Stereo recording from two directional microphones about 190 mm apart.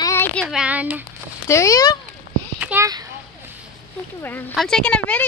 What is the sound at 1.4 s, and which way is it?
Speech, 15° left (ahead or behind).